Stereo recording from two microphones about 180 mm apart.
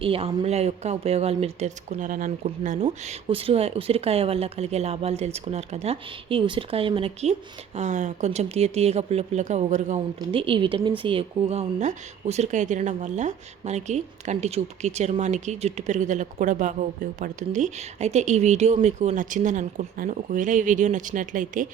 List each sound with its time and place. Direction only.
0.0 s a woman's voice: 30° right (ahead or behind); by 2.7 s 45° right (ahead or behind)
3.0 s a woman's voice: 35° right (ahead or behind)
10.2 s a woman's voice: 30° right (ahead or behind); by 21.7 s 45° right (ahead or behind)